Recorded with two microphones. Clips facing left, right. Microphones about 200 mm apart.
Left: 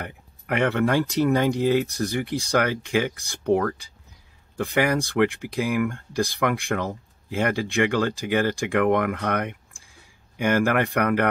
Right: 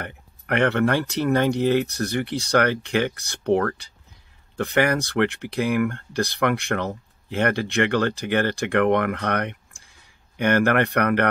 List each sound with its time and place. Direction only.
0.0 s speech: 5° left (ahead or behind)